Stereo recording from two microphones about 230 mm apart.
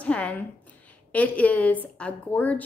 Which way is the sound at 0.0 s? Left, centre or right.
Centre.